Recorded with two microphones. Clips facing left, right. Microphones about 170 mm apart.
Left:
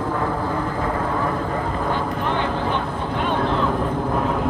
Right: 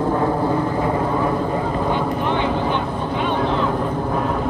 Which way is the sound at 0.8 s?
15° right (ahead or behind).